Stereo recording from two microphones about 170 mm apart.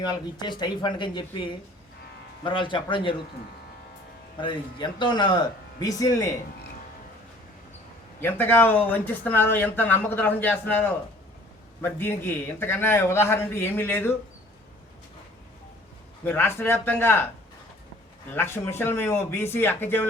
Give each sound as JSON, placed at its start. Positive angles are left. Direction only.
{"t": 0.0, "sound": "speech", "side_deg": 25}
{"t": 4.4, "sound": "speech", "side_deg": 25}
{"t": 8.2, "sound": "speech", "side_deg": 10}
{"t": 16.2, "sound": "speech", "side_deg": 15}
{"t": 18.3, "sound": "speech", "side_deg": 15}